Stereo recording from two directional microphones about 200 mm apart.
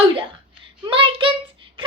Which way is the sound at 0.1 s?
25° right (ahead or behind).